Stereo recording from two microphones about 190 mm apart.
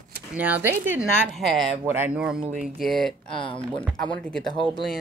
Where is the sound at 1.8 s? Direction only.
10° right (ahead or behind).